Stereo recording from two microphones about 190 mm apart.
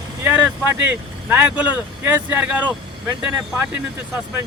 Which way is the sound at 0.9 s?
10° right (ahead or behind).